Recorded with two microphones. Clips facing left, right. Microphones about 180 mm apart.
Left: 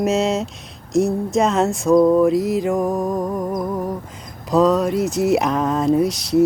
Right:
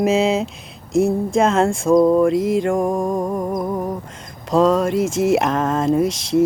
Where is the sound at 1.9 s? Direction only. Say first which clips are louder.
Even; 20° right (ahead or behind).